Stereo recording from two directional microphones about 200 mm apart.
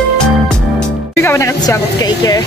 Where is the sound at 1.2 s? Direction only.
15° left (ahead or behind).